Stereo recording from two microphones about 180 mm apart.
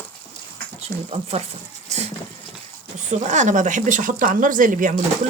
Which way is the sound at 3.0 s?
40° right (ahead or behind).